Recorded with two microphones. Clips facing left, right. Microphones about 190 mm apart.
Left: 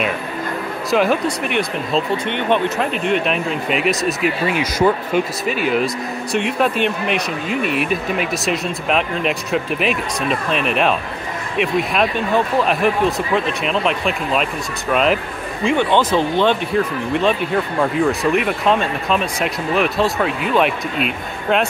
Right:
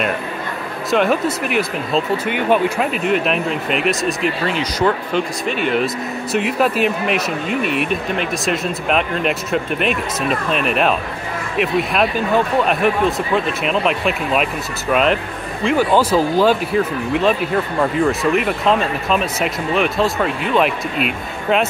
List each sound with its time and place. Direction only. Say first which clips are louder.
0.8 s speech: right 1 dB; centre (ahead or behind)